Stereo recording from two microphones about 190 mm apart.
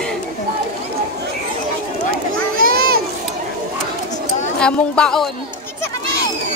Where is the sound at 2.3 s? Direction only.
50° right (ahead or behind).